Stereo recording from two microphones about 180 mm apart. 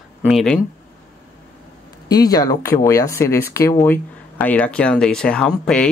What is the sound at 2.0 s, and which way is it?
Speech, 20° left (ahead or behind).